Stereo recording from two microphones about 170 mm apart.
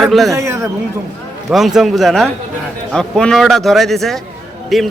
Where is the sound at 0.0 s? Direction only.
Centre (ahead or behind).